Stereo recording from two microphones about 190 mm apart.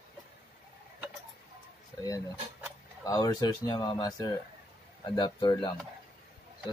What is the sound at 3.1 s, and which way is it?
Speech, 20° left (ahead or behind).